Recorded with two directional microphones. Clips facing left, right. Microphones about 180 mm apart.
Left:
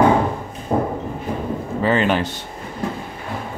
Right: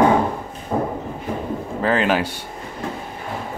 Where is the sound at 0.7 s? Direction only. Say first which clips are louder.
Left 2 dB; 25° left (ahead or behind).